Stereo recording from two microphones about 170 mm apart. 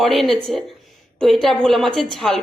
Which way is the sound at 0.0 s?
Centre (ahead or behind).